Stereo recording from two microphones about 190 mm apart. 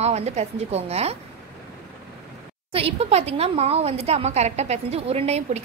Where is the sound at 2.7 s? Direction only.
30° right (ahead or behind).